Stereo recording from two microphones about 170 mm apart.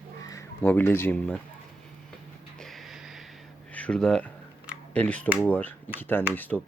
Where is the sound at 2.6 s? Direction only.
Centre (ahead or behind).